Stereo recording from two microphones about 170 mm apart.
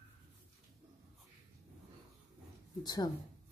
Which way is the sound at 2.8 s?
25° left (ahead or behind).